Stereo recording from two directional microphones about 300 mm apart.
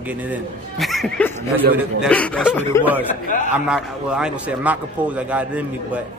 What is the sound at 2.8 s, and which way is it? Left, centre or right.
Speech, centre.